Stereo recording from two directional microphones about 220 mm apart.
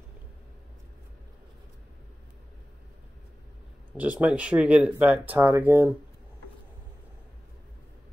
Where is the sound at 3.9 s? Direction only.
5° right (ahead or behind).